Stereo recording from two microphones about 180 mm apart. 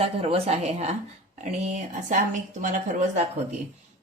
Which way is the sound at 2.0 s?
45° right (ahead or behind).